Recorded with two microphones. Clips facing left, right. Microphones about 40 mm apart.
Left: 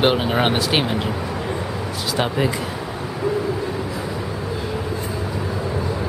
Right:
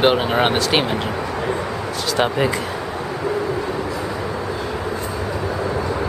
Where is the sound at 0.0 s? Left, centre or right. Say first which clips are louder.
Right 2 dB; centre.